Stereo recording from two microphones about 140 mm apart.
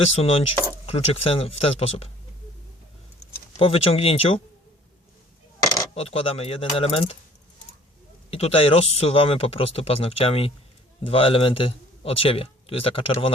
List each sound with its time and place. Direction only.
0.1 s speech: 45° left (ahead or behind)
3.6 s speech: 40° left (ahead or behind)
5.9 s speech: 45° left (ahead or behind)
8.3 s a man's voice: 45° left (ahead or behind)